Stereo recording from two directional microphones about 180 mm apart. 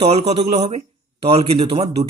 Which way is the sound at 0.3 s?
35° right (ahead or behind).